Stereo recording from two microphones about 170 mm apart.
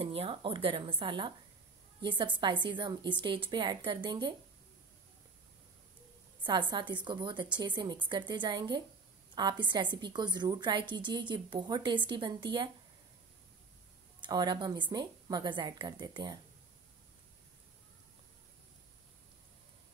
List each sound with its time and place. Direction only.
0.0 s a woman's voice: 35° right (ahead or behind)
6.4 s a woman's voice: 25° right (ahead or behind)
14.2 s a woman's voice: 25° right (ahead or behind)